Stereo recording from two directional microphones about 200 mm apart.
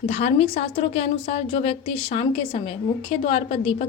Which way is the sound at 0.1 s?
30° left (ahead or behind).